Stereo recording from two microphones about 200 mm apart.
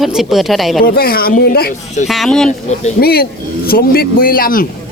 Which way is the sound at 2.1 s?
Centre (ahead or behind).